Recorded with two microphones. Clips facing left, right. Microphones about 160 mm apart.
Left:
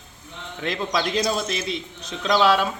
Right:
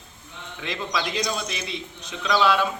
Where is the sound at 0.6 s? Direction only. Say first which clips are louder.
Left 4 dB; 45° left (ahead or behind).